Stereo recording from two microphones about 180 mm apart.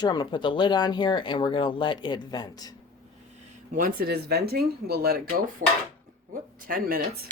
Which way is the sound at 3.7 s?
50° right (ahead or behind).